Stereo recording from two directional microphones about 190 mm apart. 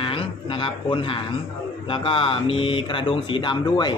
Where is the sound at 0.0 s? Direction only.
25° left (ahead or behind).